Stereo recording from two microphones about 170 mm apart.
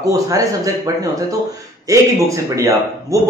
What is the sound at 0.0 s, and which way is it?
Speech, 20° right (ahead or behind).